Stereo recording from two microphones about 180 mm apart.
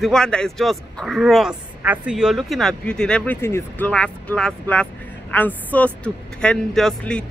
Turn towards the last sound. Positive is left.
turn(degrees=5)  # may be behind; listen again after turning